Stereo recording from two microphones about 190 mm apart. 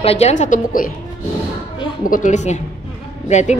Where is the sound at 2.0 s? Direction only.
45° left (ahead or behind).